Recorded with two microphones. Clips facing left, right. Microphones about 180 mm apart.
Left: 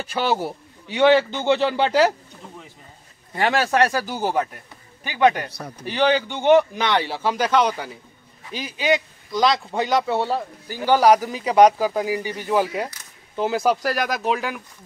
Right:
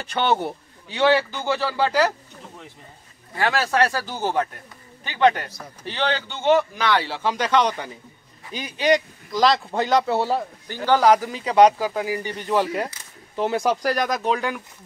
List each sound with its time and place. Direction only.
0.0 s a man's voice: 5° left (ahead or behind)
0.9 s a man's voice: 20° left (ahead or behind)
3.3 s speech: 20° left (ahead or behind); by 10.4 s centre (ahead or behind)
10.7 s speech: 10° left (ahead or behind)